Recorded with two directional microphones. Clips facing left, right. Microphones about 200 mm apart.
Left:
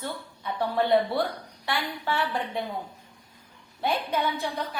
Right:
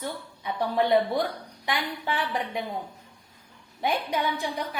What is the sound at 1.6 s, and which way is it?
A woman's voice, 15° right (ahead or behind).